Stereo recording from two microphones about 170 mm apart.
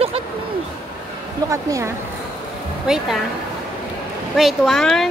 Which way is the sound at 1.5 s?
15° right (ahead or behind).